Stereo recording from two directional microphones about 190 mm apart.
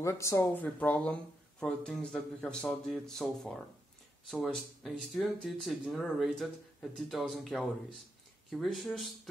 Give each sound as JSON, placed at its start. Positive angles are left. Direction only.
{"t": 0.0, "sound": "speech", "side_deg": 15}